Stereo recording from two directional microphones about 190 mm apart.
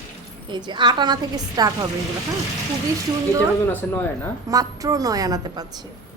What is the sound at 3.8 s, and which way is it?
Speech, 10° left (ahead or behind).